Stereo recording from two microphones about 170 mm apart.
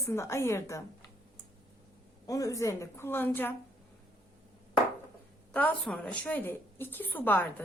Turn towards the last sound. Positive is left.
turn(degrees=10)  # may be behind; listen again after turning